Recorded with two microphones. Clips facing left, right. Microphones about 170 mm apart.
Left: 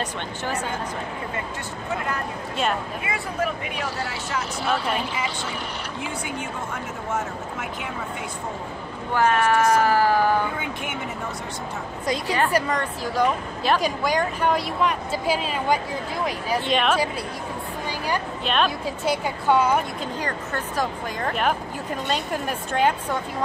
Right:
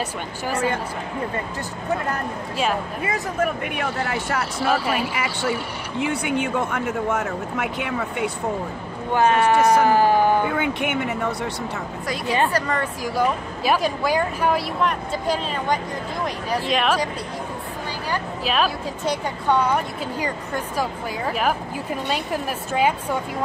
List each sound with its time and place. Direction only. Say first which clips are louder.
2.5 s speech: right 2 dB; centre (ahead or behind)
3.0 s speech: right 3 dB; 45° right (ahead or behind)
4.6 s speech: right 3 dB; 5° right (ahead or behind)
6.0 s speech: right 9 dB; 70° right (ahead or behind)
9.1 s speech: right 2 dB; 20° right (ahead or behind)
10.5 s speech: right 7 dB; 65° right (ahead or behind)
12.7 s speech: right 1 dB; 10° right (ahead or behind)
18.4 s a woman's voice: right 2 dB; 5° right (ahead or behind)
20.2 s speech: right 4 dB; 10° right (ahead or behind)